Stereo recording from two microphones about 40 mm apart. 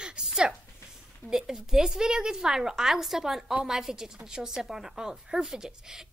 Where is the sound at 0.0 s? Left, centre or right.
Centre.